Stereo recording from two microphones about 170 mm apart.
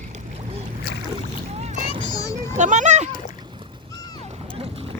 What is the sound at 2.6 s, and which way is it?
Speech, 45° right (ahead or behind).